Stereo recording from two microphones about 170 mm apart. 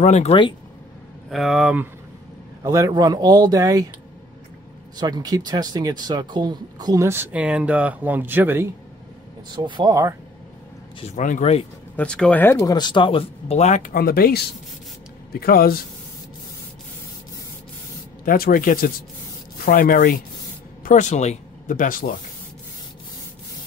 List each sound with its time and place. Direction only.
0.0 s speech: 40° left (ahead or behind)
1.3 s speech: centre (ahead or behind)
2.6 s speech: 20° right (ahead or behind)
4.9 s speech: 25° right (ahead or behind)
9.6 s speech: 25° right (ahead or behind)
11.0 s speech: 45° left (ahead or behind)
12.0 s speech: 5° left (ahead or behind); by 15.8 s 60° left (ahead or behind)
18.2 s speech: 55° left (ahead or behind)